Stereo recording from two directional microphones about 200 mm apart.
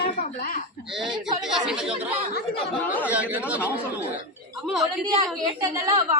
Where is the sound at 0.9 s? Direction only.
Centre (ahead or behind).